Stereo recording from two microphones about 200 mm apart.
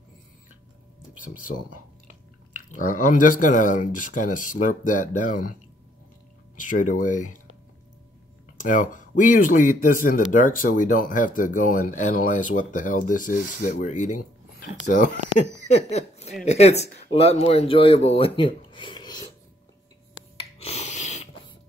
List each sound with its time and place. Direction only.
2.7 s speech: 40° left (ahead or behind)
6.6 s speech: 40° left (ahead or behind)
8.5 s speech: 40° left (ahead or behind); by 19.1 s 20° left (ahead or behind)
20.3 s a sound: 30° left (ahead or behind)